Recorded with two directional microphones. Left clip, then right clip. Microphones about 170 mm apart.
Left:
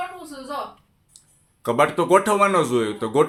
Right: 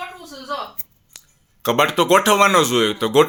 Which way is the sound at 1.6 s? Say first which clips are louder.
Right 3 dB; 20° right (ahead or behind).